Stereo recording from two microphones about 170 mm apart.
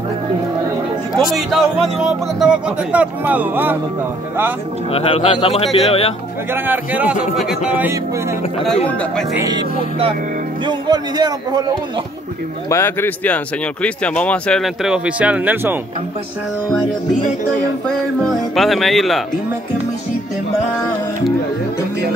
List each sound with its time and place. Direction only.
1.1 s speech: centre (ahead or behind)
4.9 s speech: 35° left (ahead or behind)
6.5 s speech: 10° right (ahead or behind)
9.4 s a man's voice: 25° right (ahead or behind)
12.6 s speech: 15° left (ahead or behind); by 15.8 s 10° right (ahead or behind)
17.8 s speech: 5° left (ahead or behind)